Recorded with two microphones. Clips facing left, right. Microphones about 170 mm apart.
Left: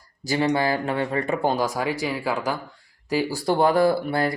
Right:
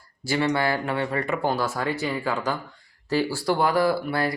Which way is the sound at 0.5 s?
15° left (ahead or behind).